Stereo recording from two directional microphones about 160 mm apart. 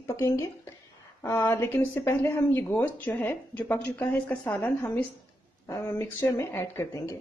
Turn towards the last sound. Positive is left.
turn(degrees=15)  # may be behind; listen again after turning